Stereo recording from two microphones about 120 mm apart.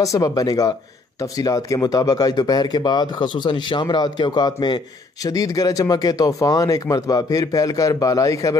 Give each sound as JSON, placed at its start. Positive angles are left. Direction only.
{"t": 0.0, "sound": "speech", "side_deg": 30}